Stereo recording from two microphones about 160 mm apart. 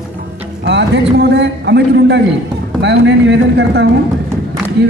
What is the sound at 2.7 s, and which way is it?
Speech, 90° right.